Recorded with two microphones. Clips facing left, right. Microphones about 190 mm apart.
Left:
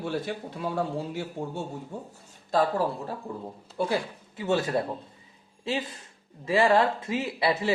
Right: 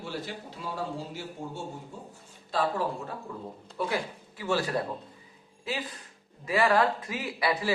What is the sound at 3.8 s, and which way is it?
A man's voice, 30° left (ahead or behind).